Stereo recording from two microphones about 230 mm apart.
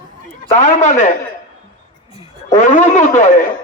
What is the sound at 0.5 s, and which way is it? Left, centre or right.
Speech, left.